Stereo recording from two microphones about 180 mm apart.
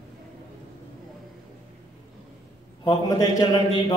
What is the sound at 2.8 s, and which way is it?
Mantra, 25° left (ahead or behind).